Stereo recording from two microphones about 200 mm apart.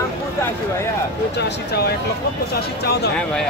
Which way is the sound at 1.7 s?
55° left (ahead or behind).